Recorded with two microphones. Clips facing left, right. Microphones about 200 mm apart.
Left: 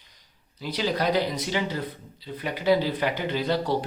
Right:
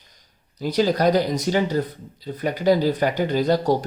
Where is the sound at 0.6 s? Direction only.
45° right (ahead or behind).